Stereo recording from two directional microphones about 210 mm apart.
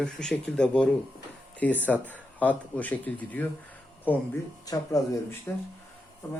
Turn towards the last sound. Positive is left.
turn(degrees=10)  # may be behind; listen again after turning